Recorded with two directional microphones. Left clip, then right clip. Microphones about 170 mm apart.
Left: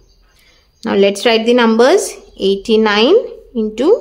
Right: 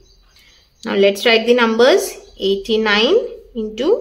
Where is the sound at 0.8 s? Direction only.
35° left (ahead or behind).